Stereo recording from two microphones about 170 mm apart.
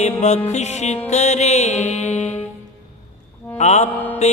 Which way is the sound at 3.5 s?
40° left (ahead or behind).